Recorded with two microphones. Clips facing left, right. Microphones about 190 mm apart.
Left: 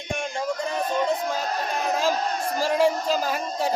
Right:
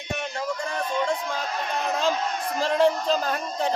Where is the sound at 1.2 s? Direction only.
40° left (ahead or behind).